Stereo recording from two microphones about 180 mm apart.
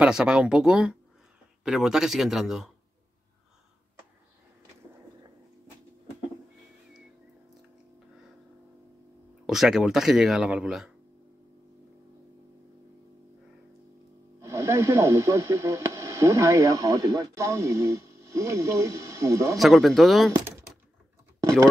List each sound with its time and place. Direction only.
0.0 s speech: 5° right (ahead or behind)
9.5 s speech: centre (ahead or behind)
14.4 s speech: 15° right (ahead or behind)
19.6 s speech: centre (ahead or behind)